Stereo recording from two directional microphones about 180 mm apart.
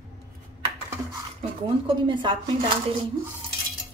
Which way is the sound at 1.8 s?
25° right (ahead or behind).